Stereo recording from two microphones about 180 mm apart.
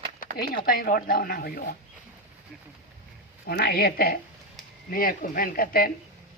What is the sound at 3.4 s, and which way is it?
A man's voice, 60° left (ahead or behind).